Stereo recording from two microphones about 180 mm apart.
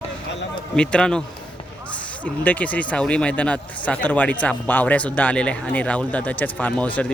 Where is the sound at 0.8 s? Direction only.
5° left (ahead or behind).